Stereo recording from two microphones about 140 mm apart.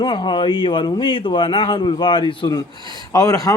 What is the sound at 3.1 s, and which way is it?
Speech, 20° left (ahead or behind).